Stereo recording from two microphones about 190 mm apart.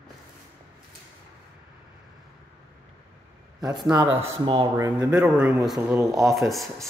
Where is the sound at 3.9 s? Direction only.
20° right (ahead or behind).